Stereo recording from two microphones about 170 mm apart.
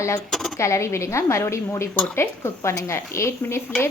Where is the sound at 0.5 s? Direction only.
15° left (ahead or behind).